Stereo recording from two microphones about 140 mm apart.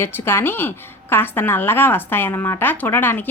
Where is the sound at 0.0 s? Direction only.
15° left (ahead or behind).